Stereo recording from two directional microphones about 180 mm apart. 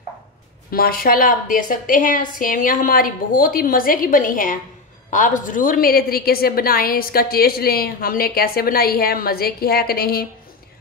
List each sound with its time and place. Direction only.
0.7 s a woman's voice: 55° left (ahead or behind)